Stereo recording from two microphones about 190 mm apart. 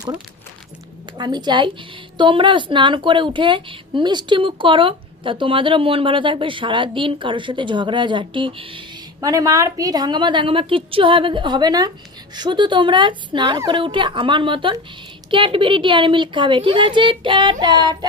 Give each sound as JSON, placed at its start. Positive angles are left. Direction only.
{"t": 1.2, "sound": "a woman's voice", "side_deg": -20}